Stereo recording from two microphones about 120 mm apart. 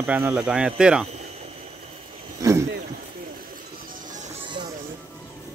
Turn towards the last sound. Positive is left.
turn(degrees=-80)